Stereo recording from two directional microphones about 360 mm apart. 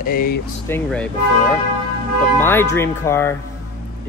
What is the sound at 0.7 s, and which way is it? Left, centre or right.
Speech, centre.